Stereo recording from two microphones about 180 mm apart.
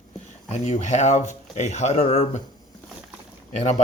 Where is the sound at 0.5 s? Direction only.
40° left (ahead or behind).